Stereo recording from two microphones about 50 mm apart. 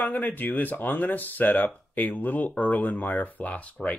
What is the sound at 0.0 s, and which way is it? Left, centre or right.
Speech, left.